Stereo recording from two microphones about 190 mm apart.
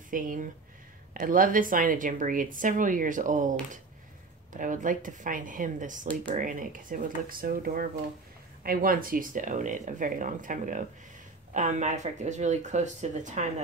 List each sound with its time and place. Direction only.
0.1 s a woman's voice: 45° right (ahead or behind)